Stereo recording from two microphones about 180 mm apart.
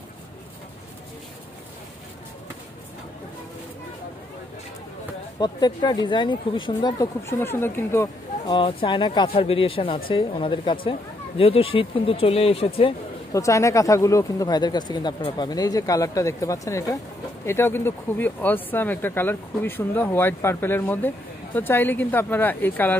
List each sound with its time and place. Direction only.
5.4 s speech: 25° left (ahead or behind)
8.5 s speech: 30° left (ahead or behind)
13.3 s speech: 15° left (ahead or behind)